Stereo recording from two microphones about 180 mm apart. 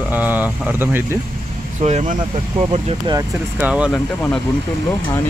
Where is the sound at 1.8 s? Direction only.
40° right (ahead or behind).